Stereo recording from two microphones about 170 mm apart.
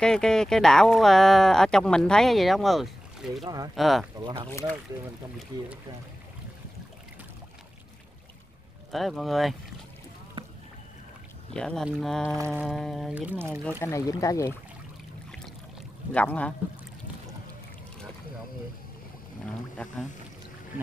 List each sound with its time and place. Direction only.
0.0 s speech: 5° left (ahead or behind)
3.4 s speech: 20° right (ahead or behind)
3.7 s speech: centre (ahead or behind)
4.2 s speech: 25° right (ahead or behind)
8.9 s speech: centre (ahead or behind)
10.4 s a sound: 30° right (ahead or behind)
11.5 s speech: 5° left (ahead or behind)
13.7 s speech: 15° left (ahead or behind)
16.1 s speech: 10° left (ahead or behind)
19.4 s speech: 5° left (ahead or behind)